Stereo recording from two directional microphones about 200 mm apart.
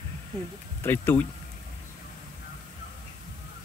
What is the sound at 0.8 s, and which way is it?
Speech, 10° left (ahead or behind).